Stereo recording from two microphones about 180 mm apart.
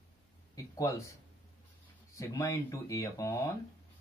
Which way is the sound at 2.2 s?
15° left (ahead or behind).